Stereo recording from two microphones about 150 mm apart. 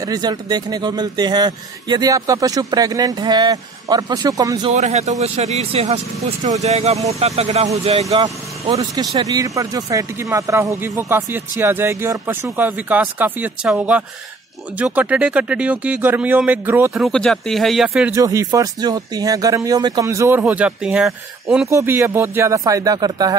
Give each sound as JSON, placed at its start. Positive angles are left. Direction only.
{"t": 0.0, "sound": "speech", "side_deg": -25}
{"t": 4.7, "sound": "speech", "side_deg": -50}
{"t": 8.7, "sound": "speech", "side_deg": -35}
{"t": 9.2, "sound": "speech", "side_deg": -25}
{"t": 17.0, "sound": "speech", "side_deg": 5}
{"t": 18.1, "sound": "speech", "side_deg": -20}
{"t": 21.6, "sound": "speech", "side_deg": -15}